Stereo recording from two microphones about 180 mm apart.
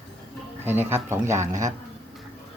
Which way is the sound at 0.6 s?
10° right (ahead or behind).